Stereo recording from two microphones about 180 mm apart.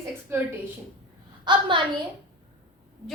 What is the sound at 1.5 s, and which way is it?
Speech, 25° right (ahead or behind).